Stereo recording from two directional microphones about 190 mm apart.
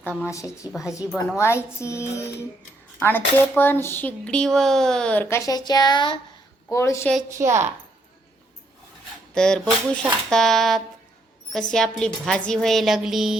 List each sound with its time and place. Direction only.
0.0 s speech: 10° left (ahead or behind)
7.3 s a child's voice: 15° right (ahead or behind)
9.3 s a woman's voice: 5° left (ahead or behind)